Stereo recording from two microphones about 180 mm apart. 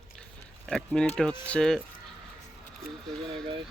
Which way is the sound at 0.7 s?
5° left (ahead or behind).